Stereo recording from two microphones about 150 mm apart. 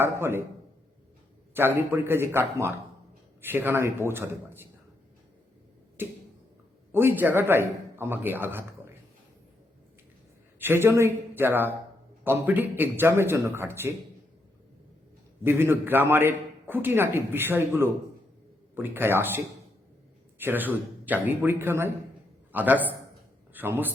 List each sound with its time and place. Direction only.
0.0 s a man's voice: 15° right (ahead or behind)
1.5 s a man's voice: 15° right (ahead or behind)
6.0 s a sound: 15° right (ahead or behind)
6.9 s a man's voice: 15° right (ahead or behind)
10.6 s a man's voice: 15° right (ahead or behind)
15.4 s a man's voice: 15° right (ahead or behind)
20.4 s a man's voice: 10° right (ahead or behind)